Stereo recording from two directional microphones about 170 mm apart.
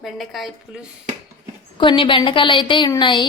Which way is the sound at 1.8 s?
30° left (ahead or behind).